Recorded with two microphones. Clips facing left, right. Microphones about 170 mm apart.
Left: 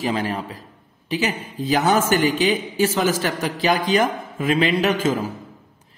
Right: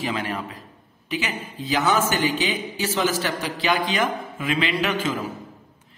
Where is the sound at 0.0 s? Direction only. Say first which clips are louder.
Left 4 dB; 35° left (ahead or behind).